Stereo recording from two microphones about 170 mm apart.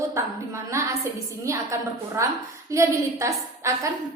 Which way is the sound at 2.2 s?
15° right (ahead or behind).